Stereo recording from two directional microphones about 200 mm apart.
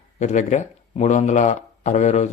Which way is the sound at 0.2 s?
35° left (ahead or behind).